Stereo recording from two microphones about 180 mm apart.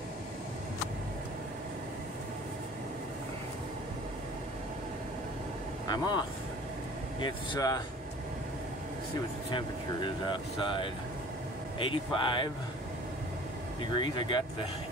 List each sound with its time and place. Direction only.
5.9 s speech: 25° left (ahead or behind)
9.5 s speech: 25° left (ahead or behind)
13.9 s speech: 25° left (ahead or behind)